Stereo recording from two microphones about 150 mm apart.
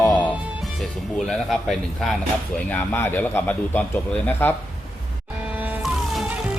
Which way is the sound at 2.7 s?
10° left (ahead or behind).